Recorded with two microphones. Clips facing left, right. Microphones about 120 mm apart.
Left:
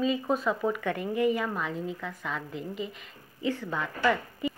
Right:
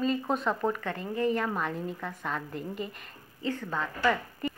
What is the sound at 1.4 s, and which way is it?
A woman's voice, centre (ahead or behind).